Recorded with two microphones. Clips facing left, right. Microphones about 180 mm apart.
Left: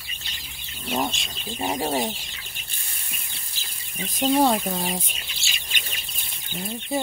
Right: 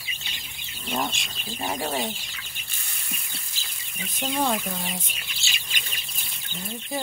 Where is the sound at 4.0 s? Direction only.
35° left (ahead or behind).